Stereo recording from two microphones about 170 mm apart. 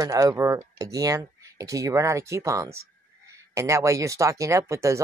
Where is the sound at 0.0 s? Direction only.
20° right (ahead or behind).